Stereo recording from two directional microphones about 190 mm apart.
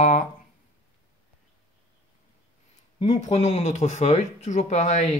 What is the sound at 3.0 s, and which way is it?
Speech, 35° left (ahead or behind).